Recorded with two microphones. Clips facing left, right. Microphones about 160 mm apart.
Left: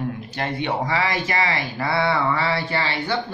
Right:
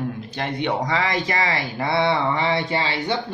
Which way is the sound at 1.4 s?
20° right (ahead or behind).